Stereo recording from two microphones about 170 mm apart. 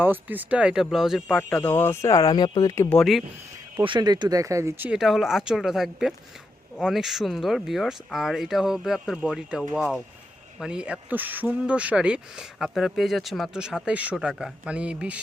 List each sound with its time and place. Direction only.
0.0 s speech: 10° right (ahead or behind); by 2.9 s 20° left (ahead or behind)
2.9 s speech: centre (ahead or behind)
3.8 s speech: 25° right (ahead or behind)
4.9 s speech: centre (ahead or behind)